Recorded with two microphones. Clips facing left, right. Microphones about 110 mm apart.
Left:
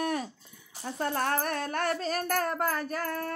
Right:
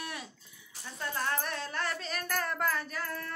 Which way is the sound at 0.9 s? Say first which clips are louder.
Left 6 dB; 50° left (ahead or behind).